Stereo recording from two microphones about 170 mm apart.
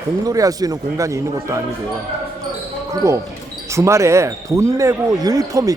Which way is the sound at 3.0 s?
20° right (ahead or behind).